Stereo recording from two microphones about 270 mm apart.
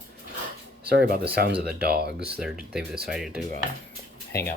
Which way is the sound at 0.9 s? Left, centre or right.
Right.